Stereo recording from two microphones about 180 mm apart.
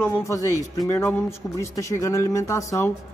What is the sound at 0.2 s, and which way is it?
Speech, 15° left (ahead or behind).